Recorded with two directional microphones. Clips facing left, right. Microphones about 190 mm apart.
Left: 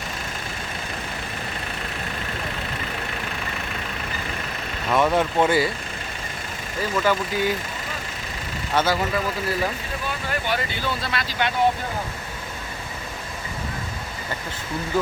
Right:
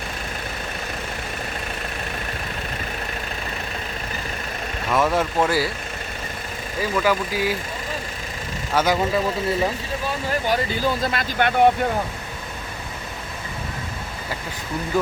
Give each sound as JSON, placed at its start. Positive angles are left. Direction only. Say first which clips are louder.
{"t": 4.9, "sound": "speech", "louder": "left 1 dB", "side_deg": 0}
{"t": 7.0, "sound": "speech", "louder": "even", "side_deg": -5}
{"t": 8.7, "sound": "speech", "louder": "right 2 dB", "side_deg": -10}
{"t": 9.0, "sound": "speech", "louder": "right 3 dB", "side_deg": -25}
{"t": 10.1, "sound": "speech", "louder": "right 4 dB", "side_deg": -40}